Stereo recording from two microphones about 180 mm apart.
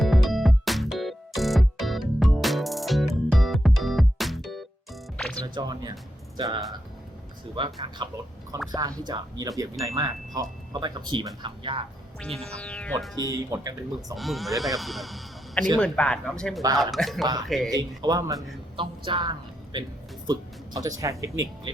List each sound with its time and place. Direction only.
0.0 s music: centre (ahead or behind)
5.5 s speech: 20° right (ahead or behind)
12.5 s speech: 5° left (ahead or behind)
13.2 s speech: 20° right (ahead or behind)
14.2 s speech: centre (ahead or behind)
17.7 s speech: 20° right (ahead or behind)